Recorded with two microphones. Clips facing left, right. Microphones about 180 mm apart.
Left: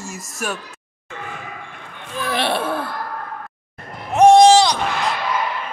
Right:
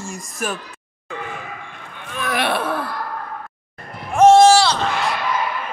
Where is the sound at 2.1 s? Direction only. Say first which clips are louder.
Even; 30° left (ahead or behind).